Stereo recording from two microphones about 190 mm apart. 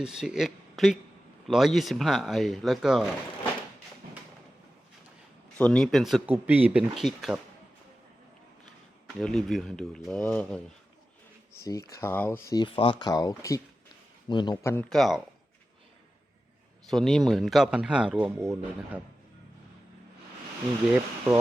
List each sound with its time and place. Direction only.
0.0 s speech: 5° right (ahead or behind)
5.5 s speech: 5° left (ahead or behind)
9.1 s speech: centre (ahead or behind)
11.6 s speech: 15° left (ahead or behind)
14.8 s speech: centre (ahead or behind)
16.9 s speech: centre (ahead or behind)